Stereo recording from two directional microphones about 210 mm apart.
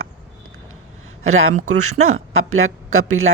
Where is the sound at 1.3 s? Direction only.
90° right.